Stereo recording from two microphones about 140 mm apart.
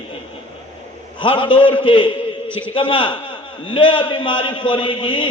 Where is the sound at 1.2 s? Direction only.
35° left (ahead or behind).